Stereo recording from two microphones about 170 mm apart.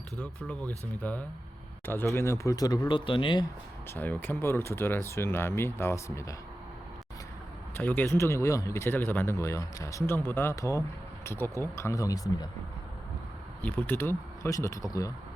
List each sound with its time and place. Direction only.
0.2 s speech: 10° left (ahead or behind); by 3.4 s 30° left (ahead or behind)
3.9 s speech: 10° left (ahead or behind)
7.8 s speech: 10° left (ahead or behind)
13.6 s speech: 10° left (ahead or behind)